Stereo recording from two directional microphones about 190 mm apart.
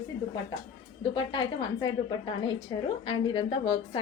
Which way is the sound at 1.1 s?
25° left (ahead or behind).